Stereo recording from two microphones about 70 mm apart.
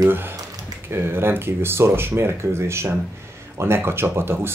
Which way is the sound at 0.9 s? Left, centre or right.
Right.